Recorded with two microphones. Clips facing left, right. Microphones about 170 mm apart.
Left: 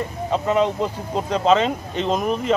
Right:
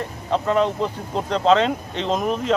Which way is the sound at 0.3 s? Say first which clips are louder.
Even; 5° left (ahead or behind).